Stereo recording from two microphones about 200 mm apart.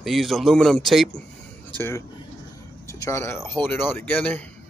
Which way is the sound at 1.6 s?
10° left (ahead or behind).